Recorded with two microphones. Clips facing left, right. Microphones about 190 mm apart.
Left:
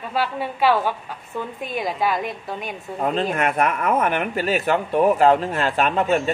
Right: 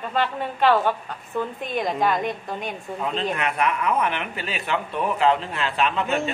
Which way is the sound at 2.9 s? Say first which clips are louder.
Left 5 dB; 45° left (ahead or behind).